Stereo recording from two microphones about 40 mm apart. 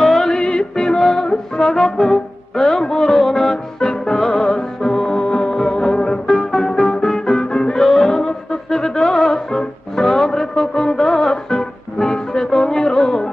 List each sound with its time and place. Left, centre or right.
0.0 s music: centre
0.3 s music: left
0.9 s music: centre